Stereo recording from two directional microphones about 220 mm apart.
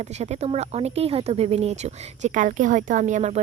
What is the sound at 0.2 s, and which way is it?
Speech, 30° right (ahead or behind).